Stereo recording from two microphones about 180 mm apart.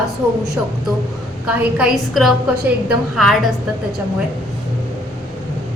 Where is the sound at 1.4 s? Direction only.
5° right (ahead or behind).